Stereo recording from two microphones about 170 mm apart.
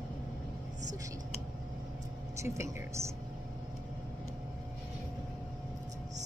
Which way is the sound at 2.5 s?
15° right (ahead or behind).